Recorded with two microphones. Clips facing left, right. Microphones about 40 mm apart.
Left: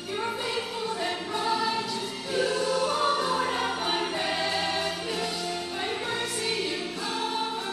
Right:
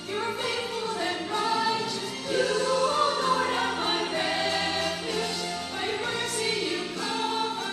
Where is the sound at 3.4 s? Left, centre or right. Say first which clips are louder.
Right 1 dB; centre.